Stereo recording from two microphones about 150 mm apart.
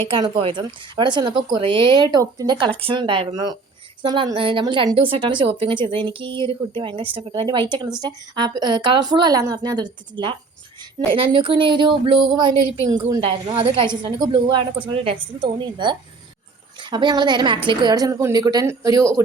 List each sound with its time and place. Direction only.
0.1 s a woman's voice: 35° right (ahead or behind)